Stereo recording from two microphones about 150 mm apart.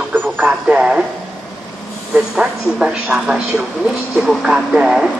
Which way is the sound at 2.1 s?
5° right (ahead or behind).